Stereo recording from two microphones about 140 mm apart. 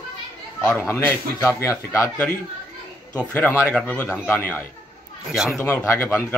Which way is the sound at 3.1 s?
10° left (ahead or behind).